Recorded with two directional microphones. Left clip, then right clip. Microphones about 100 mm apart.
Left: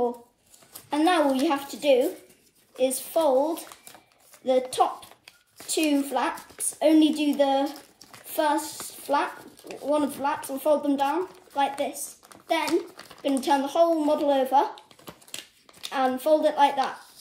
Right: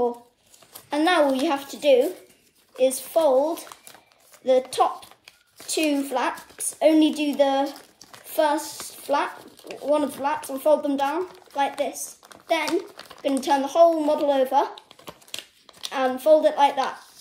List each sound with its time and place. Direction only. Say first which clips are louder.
0.7 s speech: right 2 dB; 35° right (ahead or behind)
5.7 s a woman's voice: right 1 dB; 25° right (ahead or behind)
8.8 s a sound: right 2 dB; 35° right (ahead or behind)
9.8 s a child's voice: right 3 dB; 35° right (ahead or behind)